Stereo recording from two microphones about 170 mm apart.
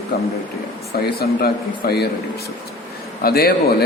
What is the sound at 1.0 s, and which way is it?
Speech, 65° left (ahead or behind).